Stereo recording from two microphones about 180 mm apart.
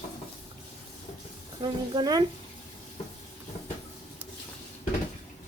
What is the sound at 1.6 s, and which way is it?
Speech, 25° right (ahead or behind).